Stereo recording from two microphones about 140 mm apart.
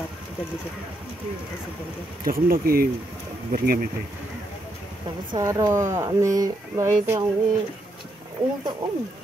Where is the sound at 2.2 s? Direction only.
90° right.